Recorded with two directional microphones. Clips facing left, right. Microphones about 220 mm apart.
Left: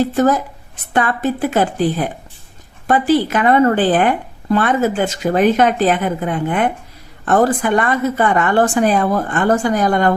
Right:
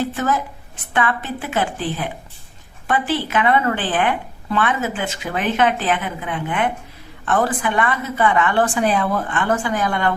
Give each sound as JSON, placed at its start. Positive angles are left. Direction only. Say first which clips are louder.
{"t": 0.0, "sound": "a woman's voice", "louder": "left 7 dB", "side_deg": 40}